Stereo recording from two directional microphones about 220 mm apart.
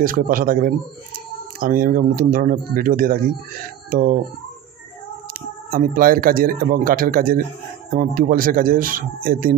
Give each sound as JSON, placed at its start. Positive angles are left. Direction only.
{"t": 0.0, "sound": "speech", "side_deg": -40}
{"t": 5.7, "sound": "speech", "side_deg": -40}